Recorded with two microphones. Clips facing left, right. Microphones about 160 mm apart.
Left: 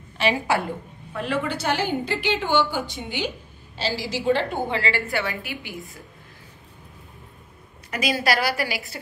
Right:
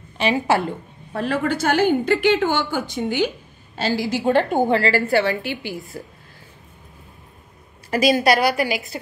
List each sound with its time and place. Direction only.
0.2 s a woman's voice: 20° right (ahead or behind)
1.1 s a woman's voice: 40° right (ahead or behind)
7.9 s a woman's voice: 30° right (ahead or behind)
8.2 s a woman's voice: 20° right (ahead or behind)